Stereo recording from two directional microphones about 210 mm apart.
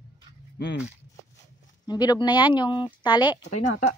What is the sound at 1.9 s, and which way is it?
Speech, 20° left (ahead or behind).